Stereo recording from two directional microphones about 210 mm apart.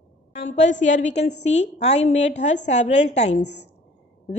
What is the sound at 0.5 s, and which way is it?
A woman's voice, 35° left (ahead or behind).